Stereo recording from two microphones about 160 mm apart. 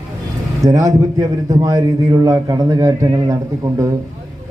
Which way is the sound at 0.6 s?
20° right (ahead or behind).